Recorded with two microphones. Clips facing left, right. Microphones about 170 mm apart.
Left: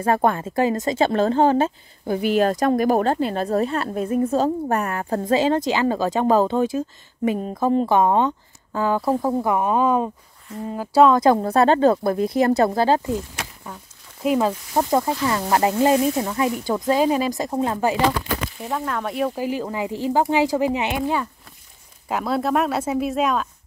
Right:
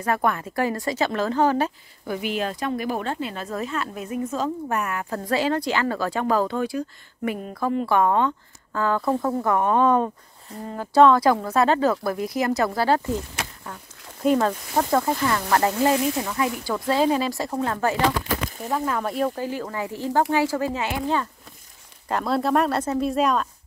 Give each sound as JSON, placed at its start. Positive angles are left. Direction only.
{"t": 0.0, "sound": "speech", "side_deg": 30}
{"t": 2.2, "sound": "speech", "side_deg": 45}
{"t": 5.2, "sound": "speech", "side_deg": 20}
{"t": 11.1, "sound": "speech", "side_deg": 25}
{"t": 13.7, "sound": "speech", "side_deg": 10}
{"t": 14.8, "sound": "speech", "side_deg": 15}
{"t": 18.7, "sound": "speech", "side_deg": 0}
{"t": 19.3, "sound": "speech", "side_deg": 15}
{"t": 22.0, "sound": "speech", "side_deg": 5}